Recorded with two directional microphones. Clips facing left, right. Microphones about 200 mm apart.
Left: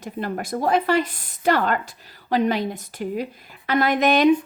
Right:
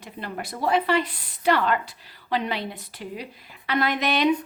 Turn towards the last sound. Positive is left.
turn(degrees=45)  # may be behind; listen again after turning